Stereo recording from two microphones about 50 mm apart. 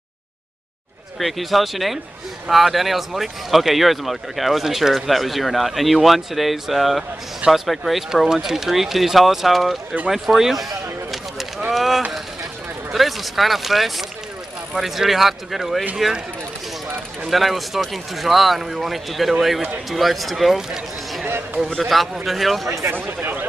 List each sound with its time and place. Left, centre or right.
1.2 s speech: centre
10.0 s a sound: centre
12.9 s speech: centre
17.3 s speech: centre
21.6 s speech: centre
22.8 s speech: right